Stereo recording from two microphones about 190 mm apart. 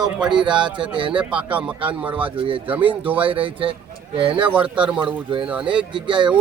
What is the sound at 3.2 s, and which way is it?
A man's voice, 25° right (ahead or behind).